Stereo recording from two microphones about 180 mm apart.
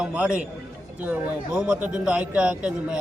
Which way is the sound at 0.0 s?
5° right (ahead or behind).